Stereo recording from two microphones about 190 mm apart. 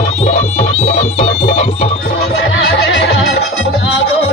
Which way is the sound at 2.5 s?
85° left.